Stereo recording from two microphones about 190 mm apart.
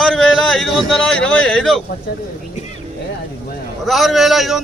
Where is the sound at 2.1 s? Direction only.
50° left (ahead or behind).